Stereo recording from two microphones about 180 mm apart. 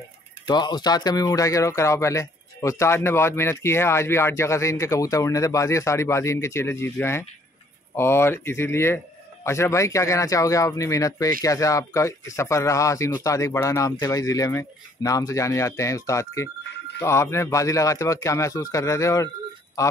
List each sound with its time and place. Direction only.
0.5 s speech: 25° left (ahead or behind)